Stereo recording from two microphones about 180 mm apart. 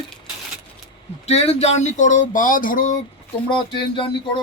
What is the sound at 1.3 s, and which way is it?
Speech, 35° left (ahead or behind).